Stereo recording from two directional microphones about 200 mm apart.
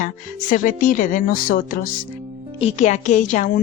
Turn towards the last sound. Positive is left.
turn(degrees=40)  # may be behind; listen again after turning